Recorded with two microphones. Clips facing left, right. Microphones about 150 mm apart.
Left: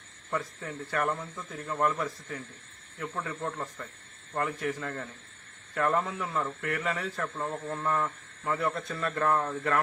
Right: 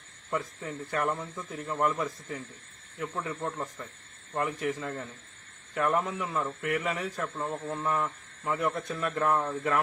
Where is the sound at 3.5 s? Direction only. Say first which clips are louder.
Right 1 dB; 15° right (ahead or behind).